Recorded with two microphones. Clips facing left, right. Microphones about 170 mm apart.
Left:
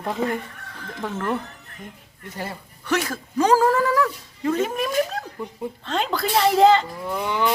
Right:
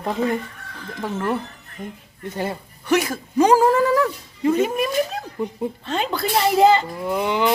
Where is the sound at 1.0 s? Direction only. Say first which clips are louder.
Right 2 dB; 10° right (ahead or behind).